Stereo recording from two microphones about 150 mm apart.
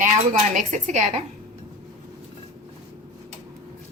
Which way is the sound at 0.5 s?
55° right (ahead or behind).